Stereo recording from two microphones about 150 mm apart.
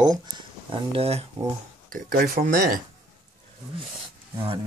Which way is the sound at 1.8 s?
75° right (ahead or behind).